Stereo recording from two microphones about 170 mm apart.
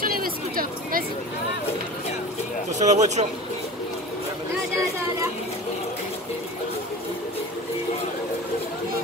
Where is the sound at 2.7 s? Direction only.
45° right (ahead or behind).